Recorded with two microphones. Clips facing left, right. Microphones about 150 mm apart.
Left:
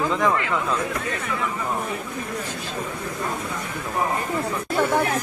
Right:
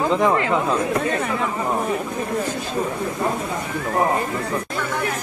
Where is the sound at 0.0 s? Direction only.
25° right (ahead or behind).